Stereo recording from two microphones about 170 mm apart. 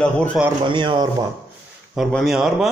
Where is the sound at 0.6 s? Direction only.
25° right (ahead or behind).